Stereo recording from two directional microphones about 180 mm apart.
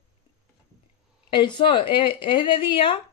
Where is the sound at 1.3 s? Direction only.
25° left (ahead or behind).